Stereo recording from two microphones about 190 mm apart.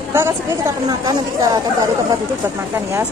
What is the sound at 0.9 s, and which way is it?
Speech, 20° right (ahead or behind).